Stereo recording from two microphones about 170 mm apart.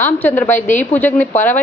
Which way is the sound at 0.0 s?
10° left (ahead or behind).